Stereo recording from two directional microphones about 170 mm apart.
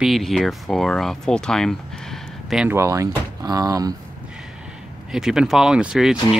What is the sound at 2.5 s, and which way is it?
Speech, 10° right (ahead or behind).